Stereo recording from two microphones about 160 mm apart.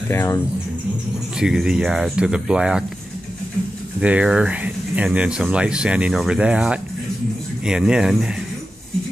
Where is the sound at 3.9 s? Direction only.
5° right (ahead or behind).